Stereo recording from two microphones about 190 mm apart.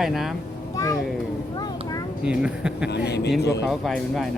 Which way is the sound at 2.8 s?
60° left (ahead or behind).